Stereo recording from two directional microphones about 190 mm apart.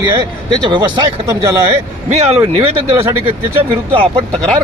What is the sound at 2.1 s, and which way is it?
Speech, 35° right (ahead or behind).